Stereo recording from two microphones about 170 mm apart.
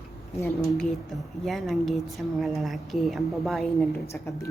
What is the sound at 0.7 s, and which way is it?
A woman's voice, centre (ahead or behind).